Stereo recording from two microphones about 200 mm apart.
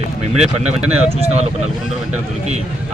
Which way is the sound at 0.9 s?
30° right (ahead or behind).